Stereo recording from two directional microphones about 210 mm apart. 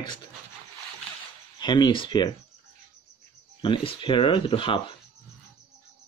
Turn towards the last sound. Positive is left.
turn(degrees=25)  # may be behind; listen again after turning